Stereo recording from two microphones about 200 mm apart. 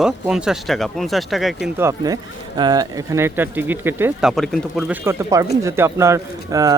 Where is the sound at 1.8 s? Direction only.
15° right (ahead or behind).